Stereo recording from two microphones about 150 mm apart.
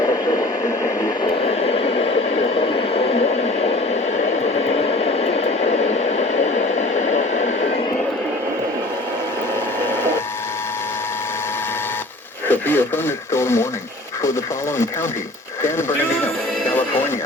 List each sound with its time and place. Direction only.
0.0 s a sound: 30° left (ahead or behind)
1.0 s vehicle: 35° left (ahead or behind)
4.2 s a sound: 45° left (ahead or behind)
12.5 s radio: 15° left (ahead or behind)
13.3 s speech: 15° left (ahead or behind)
15.6 s speech: 15° left (ahead or behind)